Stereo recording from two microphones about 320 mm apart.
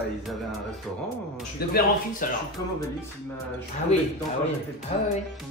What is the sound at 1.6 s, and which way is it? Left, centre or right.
Speech, left.